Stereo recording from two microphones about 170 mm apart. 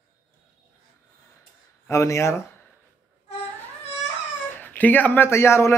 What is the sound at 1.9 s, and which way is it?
Speech, 15° left (ahead or behind).